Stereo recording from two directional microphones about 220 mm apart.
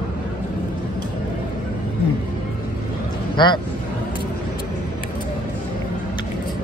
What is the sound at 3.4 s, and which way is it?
Speech, 20° left (ahead or behind).